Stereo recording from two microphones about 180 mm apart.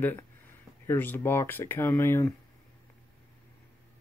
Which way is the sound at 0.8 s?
10° left (ahead or behind).